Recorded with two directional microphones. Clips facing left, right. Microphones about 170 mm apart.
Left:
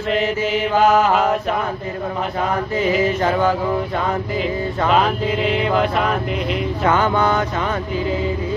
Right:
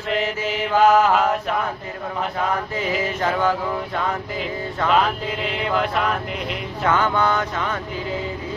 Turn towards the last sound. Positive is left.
turn(degrees=10)  # may be behind; listen again after turning